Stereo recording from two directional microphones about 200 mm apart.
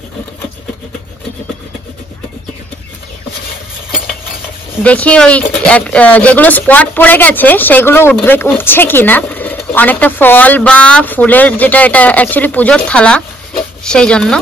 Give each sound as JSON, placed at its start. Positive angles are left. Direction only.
{"t": 4.8, "sound": "speech", "side_deg": 5}